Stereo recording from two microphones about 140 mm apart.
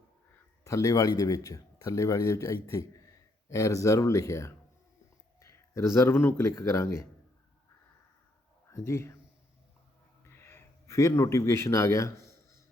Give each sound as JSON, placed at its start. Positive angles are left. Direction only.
{"t": 0.6, "sound": "speech", "side_deg": 20}
{"t": 8.7, "sound": "a man's voice", "side_deg": 20}
{"t": 10.2, "sound": "a sound", "side_deg": 20}